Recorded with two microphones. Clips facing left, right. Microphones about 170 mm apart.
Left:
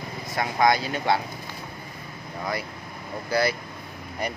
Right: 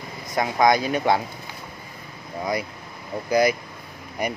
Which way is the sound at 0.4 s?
20° right (ahead or behind).